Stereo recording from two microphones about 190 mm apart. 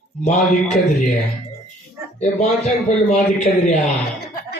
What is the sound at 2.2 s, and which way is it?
A woman's voice, 35° left (ahead or behind).